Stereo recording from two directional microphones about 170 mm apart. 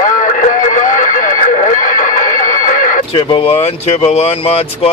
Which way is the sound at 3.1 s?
35° left (ahead or behind).